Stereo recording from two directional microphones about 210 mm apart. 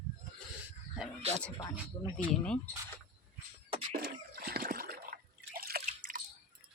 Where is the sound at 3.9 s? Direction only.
45° right (ahead or behind).